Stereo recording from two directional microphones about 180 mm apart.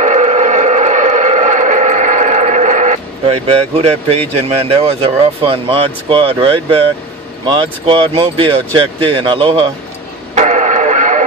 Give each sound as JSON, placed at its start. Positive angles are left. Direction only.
{"t": 0.0, "sound": "a sound", "side_deg": -40}
{"t": 3.4, "sound": "speech", "side_deg": -35}
{"t": 10.3, "sound": "radio", "side_deg": -40}